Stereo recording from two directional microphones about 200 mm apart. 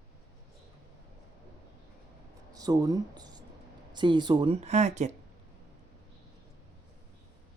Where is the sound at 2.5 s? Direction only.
20° right (ahead or behind); by 5.1 s 35° right (ahead or behind).